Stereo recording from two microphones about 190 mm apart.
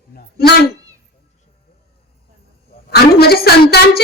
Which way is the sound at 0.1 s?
55° left (ahead or behind).